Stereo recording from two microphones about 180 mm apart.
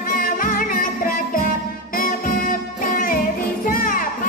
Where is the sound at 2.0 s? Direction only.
50° left (ahead or behind).